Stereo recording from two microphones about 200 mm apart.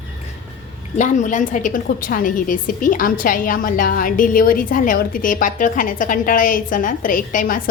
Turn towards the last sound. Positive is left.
turn(degrees=40)  # may be behind; listen again after turning